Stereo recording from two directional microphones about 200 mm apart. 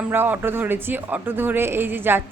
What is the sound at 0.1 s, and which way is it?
Speech, 10° right (ahead or behind).